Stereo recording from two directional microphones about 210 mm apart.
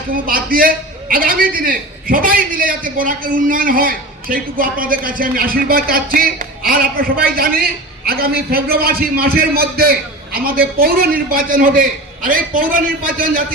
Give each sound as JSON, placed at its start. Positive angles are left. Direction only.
{"t": 0.3, "sound": "a man's voice", "side_deg": -45}